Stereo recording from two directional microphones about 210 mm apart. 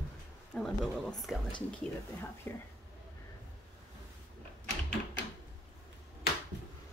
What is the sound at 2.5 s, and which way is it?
Speech, 10° left (ahead or behind).